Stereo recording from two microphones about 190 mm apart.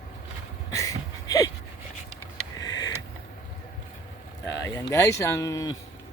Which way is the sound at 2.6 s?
20° left (ahead or behind).